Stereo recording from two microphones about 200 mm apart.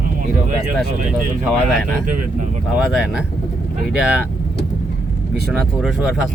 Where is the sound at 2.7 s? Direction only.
Centre (ahead or behind).